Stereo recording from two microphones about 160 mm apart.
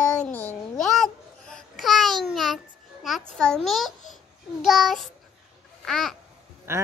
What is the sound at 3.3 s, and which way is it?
A child's voice, 5° left (ahead or behind).